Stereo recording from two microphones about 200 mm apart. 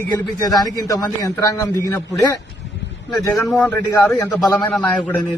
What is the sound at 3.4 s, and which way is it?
A man's voice, 5° left (ahead or behind).